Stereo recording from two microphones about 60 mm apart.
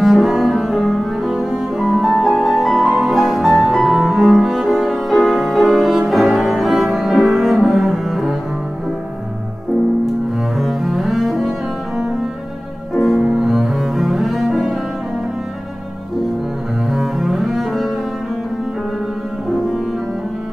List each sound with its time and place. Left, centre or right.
0.0 s cello: centre
10.6 s double bass: centre
12.9 s music: centre
13.2 s cello: centre
16.9 s double bass: centre